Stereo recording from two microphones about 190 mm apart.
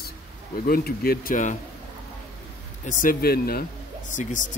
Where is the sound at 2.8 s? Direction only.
45° left (ahead or behind).